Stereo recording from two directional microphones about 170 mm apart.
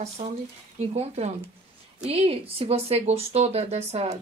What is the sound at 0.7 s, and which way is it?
Speech, 40° right (ahead or behind).